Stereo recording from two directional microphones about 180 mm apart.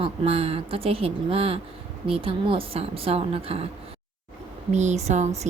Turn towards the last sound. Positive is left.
turn(degrees=-40)  # may be behind; listen again after turning